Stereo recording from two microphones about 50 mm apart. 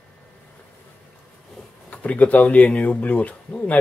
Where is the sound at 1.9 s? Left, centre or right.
Left.